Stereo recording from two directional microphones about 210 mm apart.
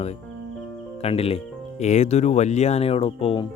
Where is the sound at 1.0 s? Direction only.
30° left (ahead or behind).